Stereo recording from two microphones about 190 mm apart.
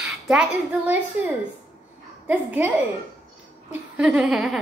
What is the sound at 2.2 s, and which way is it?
Speech, 10° right (ahead or behind).